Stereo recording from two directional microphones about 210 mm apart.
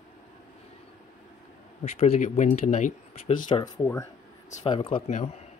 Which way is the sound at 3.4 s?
20° left (ahead or behind).